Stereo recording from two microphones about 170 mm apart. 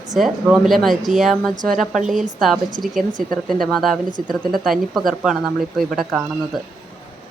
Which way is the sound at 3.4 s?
Centre (ahead or behind).